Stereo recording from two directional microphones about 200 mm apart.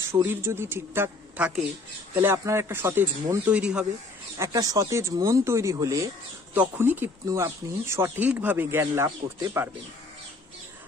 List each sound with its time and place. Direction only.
0.1 s speech: 10° right (ahead or behind)
4.4 s speech: 20° right (ahead or behind)